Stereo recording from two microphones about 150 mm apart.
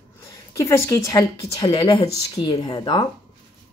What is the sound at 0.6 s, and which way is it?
Speech, 20° left (ahead or behind).